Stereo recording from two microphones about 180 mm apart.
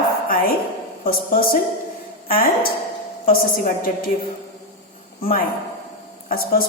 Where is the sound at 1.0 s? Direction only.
55° left (ahead or behind).